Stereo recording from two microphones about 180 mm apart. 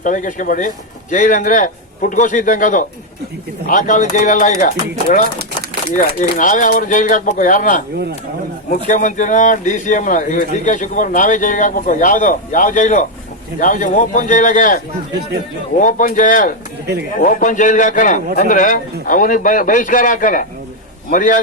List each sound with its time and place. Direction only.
0.0 s speech: 45° left (ahead or behind)
5.9 s speech: 45° left (ahead or behind)
15.8 s speech: 45° left (ahead or behind)